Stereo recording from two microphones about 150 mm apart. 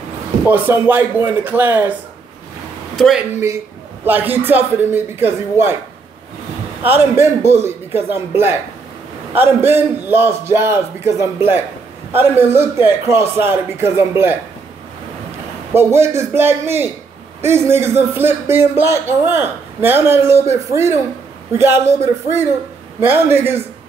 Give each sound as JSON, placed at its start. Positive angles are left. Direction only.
{"t": 0.5, "sound": "a man's voice", "side_deg": -15}
{"t": 3.3, "sound": "a man's voice", "side_deg": -15}
{"t": 6.8, "sound": "a man's voice", "side_deg": -15}
{"t": 15.7, "sound": "a man's voice", "side_deg": -15}